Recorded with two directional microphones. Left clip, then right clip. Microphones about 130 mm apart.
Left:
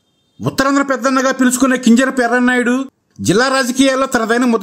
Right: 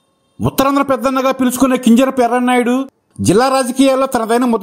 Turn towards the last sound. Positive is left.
turn(degrees=-10)  # may be behind; listen again after turning